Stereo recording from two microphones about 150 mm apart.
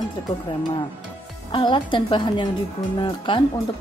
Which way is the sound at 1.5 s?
30° left (ahead or behind).